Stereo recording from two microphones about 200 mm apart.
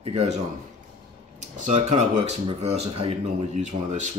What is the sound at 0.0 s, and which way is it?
Speech, 30° right (ahead or behind).